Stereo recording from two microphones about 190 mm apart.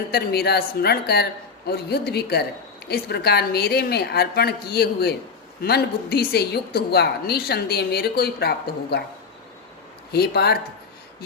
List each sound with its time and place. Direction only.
0.1 s a woman's voice: 55° left (ahead or behind)
10.1 s a woman's voice: 55° left (ahead or behind)